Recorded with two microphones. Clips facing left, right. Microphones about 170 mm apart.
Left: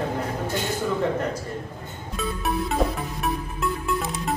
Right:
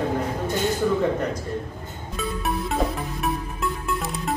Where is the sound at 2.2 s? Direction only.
Centre (ahead or behind).